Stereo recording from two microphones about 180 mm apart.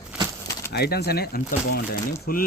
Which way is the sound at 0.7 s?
65° left (ahead or behind).